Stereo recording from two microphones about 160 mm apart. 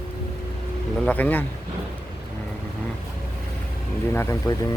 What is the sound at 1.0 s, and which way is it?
Speech, 10° left (ahead or behind).